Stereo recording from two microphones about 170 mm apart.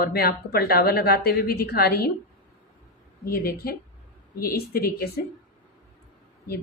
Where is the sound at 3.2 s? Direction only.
60° left (ahead or behind).